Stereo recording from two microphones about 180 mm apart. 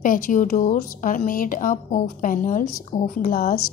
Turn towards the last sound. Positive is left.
turn(degrees=50)  # may be behind; listen again after turning